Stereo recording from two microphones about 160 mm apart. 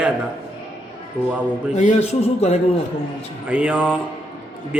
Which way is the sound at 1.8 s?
45° left (ahead or behind).